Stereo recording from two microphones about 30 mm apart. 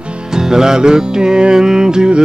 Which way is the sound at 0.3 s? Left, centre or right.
Right.